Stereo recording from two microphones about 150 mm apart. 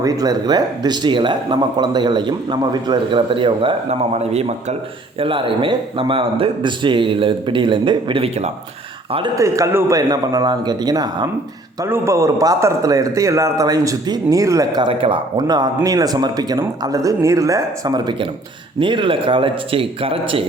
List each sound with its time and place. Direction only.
0.0 s a man's voice: 25° right (ahead or behind)
3.8 s a man's voice: 45° right (ahead or behind)
9.4 s a man's voice: 20° right (ahead or behind); by 20.4 s 40° right (ahead or behind)